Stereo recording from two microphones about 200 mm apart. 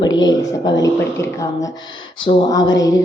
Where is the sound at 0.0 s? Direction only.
20° left (ahead or behind).